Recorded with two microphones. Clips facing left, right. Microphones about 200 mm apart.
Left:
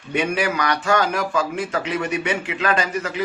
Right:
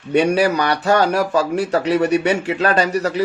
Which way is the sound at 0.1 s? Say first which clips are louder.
Right 7 dB; 40° right (ahead or behind).